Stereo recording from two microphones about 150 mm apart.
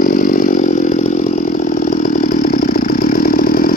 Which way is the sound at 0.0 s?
65° left (ahead or behind).